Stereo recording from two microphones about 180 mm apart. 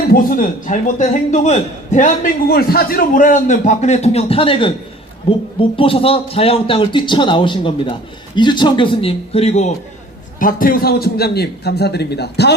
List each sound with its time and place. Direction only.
0.1 s a man's voice: 50° left (ahead or behind)
10.4 s a man's voice: 50° left (ahead or behind)